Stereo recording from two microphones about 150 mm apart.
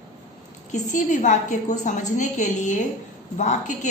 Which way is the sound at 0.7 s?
55° left (ahead or behind).